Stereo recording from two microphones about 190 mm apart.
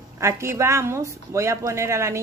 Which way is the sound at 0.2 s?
15° right (ahead or behind).